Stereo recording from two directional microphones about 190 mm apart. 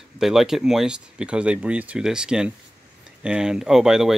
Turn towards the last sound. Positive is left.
turn(degrees=-5)  # may be behind; listen again after turning